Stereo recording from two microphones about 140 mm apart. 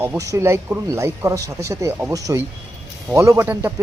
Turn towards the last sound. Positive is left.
turn(degrees=-20)  # may be behind; listen again after turning